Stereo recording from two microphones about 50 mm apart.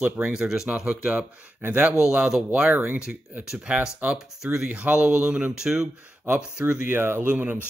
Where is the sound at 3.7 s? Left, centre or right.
Right.